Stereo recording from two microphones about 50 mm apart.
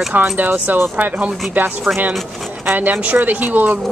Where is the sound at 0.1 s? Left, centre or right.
Right.